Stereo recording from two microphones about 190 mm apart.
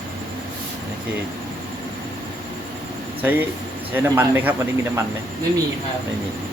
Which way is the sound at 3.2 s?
10° right (ahead or behind).